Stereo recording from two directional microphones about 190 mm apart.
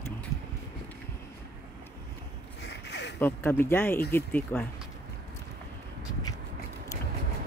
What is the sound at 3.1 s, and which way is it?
Speech, 10° left (ahead or behind).